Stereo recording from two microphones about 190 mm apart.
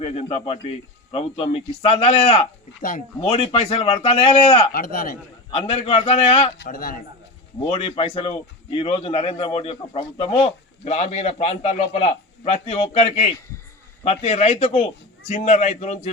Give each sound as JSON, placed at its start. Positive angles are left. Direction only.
{"t": 0.0, "sound": "a man's voice", "side_deg": 30}
{"t": 4.7, "sound": "speech", "side_deg": 50}
{"t": 5.5, "sound": "a man's voice", "side_deg": 30}
{"t": 6.6, "sound": "speech", "side_deg": 50}
{"t": 7.7, "sound": "a man's voice", "side_deg": 30}